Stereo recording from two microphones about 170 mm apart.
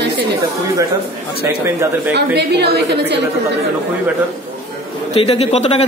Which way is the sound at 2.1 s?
75° right (ahead or behind).